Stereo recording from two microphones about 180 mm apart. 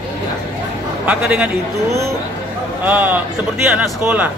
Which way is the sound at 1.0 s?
5° right (ahead or behind).